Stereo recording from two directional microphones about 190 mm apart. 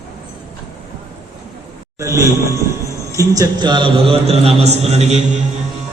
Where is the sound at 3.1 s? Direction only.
15° right (ahead or behind); by 5.2 s 35° right (ahead or behind).